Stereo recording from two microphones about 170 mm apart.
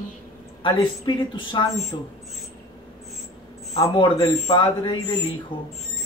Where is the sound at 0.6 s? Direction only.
30° left (ahead or behind).